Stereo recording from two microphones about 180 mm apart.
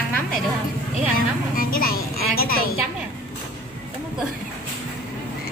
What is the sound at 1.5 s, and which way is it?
A woman's voice, 55° left (ahead or behind).